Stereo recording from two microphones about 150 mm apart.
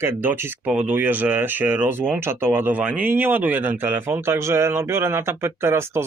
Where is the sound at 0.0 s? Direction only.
15° right (ahead or behind).